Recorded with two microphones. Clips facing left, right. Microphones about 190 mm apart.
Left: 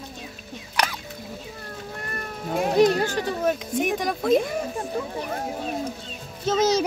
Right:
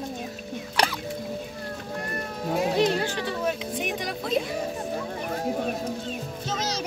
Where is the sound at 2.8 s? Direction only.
45° left (ahead or behind).